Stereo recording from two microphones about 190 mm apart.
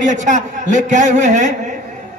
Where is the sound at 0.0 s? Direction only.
40° right (ahead or behind).